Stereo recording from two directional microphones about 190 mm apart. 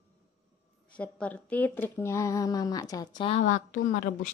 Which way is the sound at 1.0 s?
5° left (ahead or behind).